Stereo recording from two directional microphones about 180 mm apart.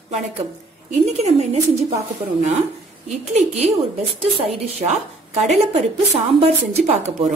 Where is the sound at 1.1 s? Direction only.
35° right (ahead or behind).